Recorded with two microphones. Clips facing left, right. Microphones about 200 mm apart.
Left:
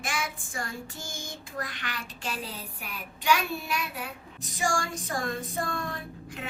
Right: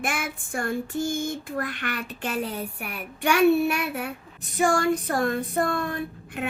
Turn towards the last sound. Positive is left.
turn(degrees=-60)  # may be behind; listen again after turning